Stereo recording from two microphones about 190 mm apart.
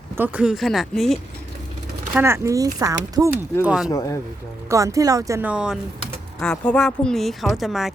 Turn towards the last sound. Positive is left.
turn(degrees=0)  # may be behind; listen again after turning